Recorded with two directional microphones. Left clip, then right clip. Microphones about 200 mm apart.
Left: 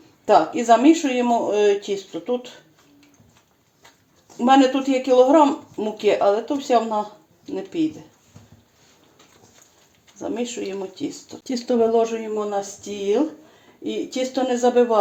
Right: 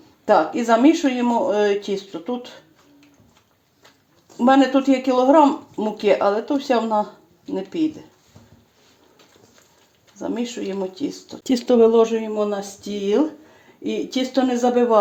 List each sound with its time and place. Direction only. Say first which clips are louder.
0.3 s speech: left 1 dB; 20° right (ahead or behind)
4.4 s speech: even; 25° right (ahead or behind)
10.2 s speech: even; 25° right (ahead or behind)
11.4 s speech: right 5 dB; 50° right (ahead or behind); by 14.9 s 30° right (ahead or behind)